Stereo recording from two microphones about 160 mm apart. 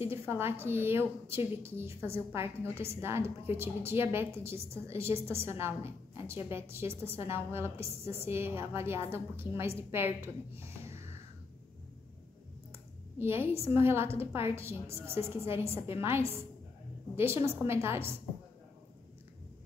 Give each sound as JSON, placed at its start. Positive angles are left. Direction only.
{"t": 0.0, "sound": "a woman's voice", "side_deg": -15}
{"t": 12.7, "sound": "clicking", "side_deg": -15}
{"t": 13.8, "sound": "a woman's voice", "side_deg": -15}